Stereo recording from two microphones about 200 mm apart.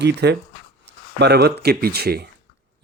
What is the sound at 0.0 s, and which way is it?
Speech, 55° right (ahead or behind).